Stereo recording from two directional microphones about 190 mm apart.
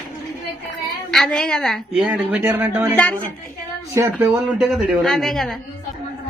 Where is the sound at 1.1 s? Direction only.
Centre (ahead or behind).